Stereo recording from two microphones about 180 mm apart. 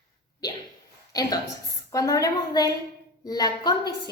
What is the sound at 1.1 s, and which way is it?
A woman's voice, 20° left (ahead or behind).